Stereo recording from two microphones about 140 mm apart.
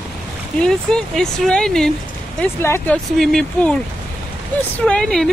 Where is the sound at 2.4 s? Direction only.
15° left (ahead or behind).